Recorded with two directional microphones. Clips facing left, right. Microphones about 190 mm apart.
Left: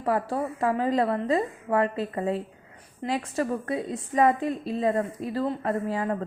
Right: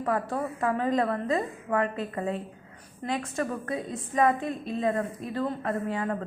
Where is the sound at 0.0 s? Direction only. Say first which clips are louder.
Left 2 dB; 30° left (ahead or behind).